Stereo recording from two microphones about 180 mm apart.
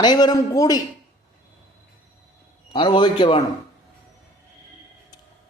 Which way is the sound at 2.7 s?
25° left (ahead or behind).